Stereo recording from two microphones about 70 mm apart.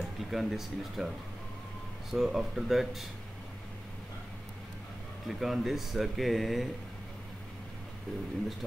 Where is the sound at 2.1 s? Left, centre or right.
Centre.